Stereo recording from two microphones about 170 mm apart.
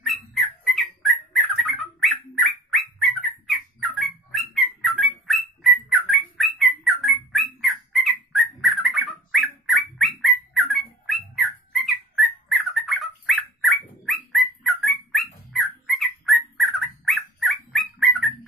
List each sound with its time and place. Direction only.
0.0 s bird: centre (ahead or behind)
15.5 s dog: centre (ahead or behind)